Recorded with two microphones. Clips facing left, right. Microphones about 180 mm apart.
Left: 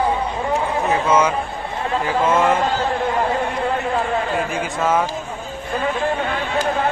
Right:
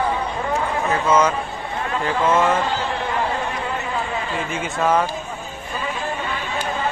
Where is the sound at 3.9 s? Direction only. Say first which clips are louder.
Left 5 dB; 55° left (ahead or behind).